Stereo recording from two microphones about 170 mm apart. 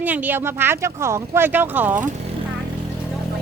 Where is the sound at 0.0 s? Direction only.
10° right (ahead or behind).